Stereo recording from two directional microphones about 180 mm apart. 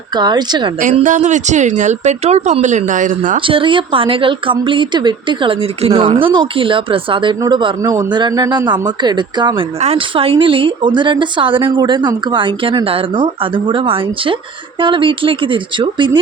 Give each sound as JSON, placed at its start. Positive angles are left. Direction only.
{"t": 0.2, "sound": "speech", "side_deg": -25}
{"t": 0.8, "sound": "speech", "side_deg": -45}
{"t": 3.4, "sound": "speech", "side_deg": -30}